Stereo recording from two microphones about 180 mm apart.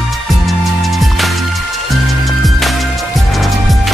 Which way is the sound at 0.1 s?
Centre (ahead or behind).